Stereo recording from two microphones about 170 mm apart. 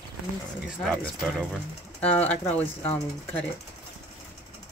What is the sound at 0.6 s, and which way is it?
Speech, centre (ahead or behind).